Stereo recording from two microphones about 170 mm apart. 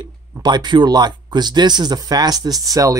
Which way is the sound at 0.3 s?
25° right (ahead or behind).